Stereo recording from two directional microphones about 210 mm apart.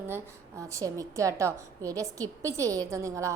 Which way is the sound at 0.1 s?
15° right (ahead or behind).